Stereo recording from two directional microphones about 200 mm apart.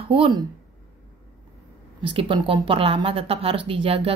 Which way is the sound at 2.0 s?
25° right (ahead or behind).